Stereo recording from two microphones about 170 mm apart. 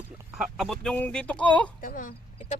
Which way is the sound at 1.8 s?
50° left (ahead or behind).